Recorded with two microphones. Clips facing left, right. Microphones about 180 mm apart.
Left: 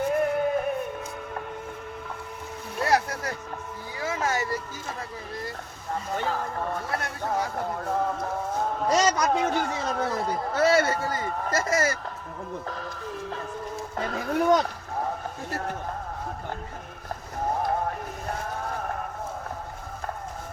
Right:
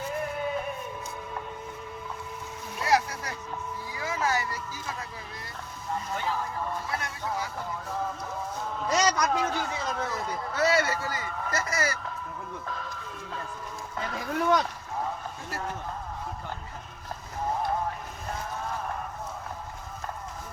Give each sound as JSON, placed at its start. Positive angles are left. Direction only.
{"t": 0.1, "sound": "music", "side_deg": 60}
{"t": 4.0, "sound": "vehicle", "side_deg": 40}
{"t": 6.1, "sound": "speech", "side_deg": 55}
{"t": 8.9, "sound": "a man's voice", "side_deg": 30}
{"t": 9.3, "sound": "a man's voice", "side_deg": 50}
{"t": 13.9, "sound": "a man's voice", "side_deg": 45}